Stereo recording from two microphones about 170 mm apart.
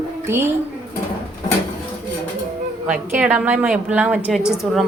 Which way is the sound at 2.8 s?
5° right (ahead or behind).